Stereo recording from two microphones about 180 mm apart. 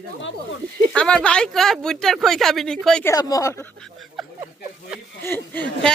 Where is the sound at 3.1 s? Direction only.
20° left (ahead or behind).